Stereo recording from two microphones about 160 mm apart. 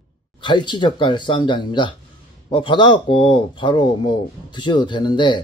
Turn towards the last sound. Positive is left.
turn(degrees=30)  # may be behind; listen again after turning